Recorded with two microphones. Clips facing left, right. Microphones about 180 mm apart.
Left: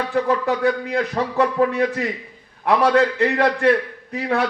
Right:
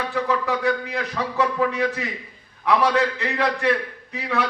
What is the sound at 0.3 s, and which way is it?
A man's voice, 50° left (ahead or behind).